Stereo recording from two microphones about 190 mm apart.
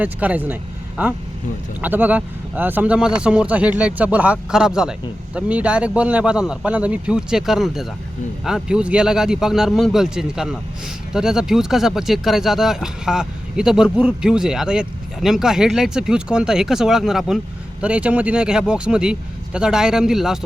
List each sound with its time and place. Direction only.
0.0 s speech: 10° right (ahead or behind)